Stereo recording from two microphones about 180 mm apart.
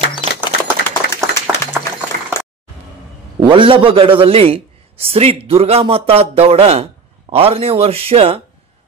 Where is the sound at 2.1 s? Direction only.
50° right (ahead or behind).